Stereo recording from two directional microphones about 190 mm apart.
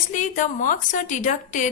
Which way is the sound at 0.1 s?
40° left (ahead or behind).